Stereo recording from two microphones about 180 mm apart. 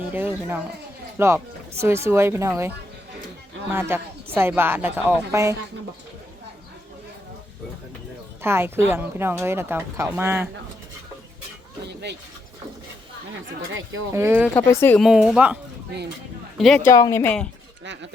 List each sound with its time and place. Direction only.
0.1 s speech: 10° right (ahead or behind)
8.4 s a woman's voice: 15° right (ahead or behind)
14.1 s speech: 15° right (ahead or behind)
14.5 s speech: 15° left (ahead or behind)
15.0 s speech: 5° right (ahead or behind)
16.6 s speech: centre (ahead or behind)
16.9 s speech: 15° left (ahead or behind)
17.8 s speech: 85° right